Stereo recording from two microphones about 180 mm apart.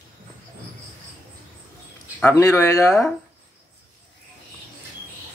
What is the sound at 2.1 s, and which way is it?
Speech, 15° left (ahead or behind).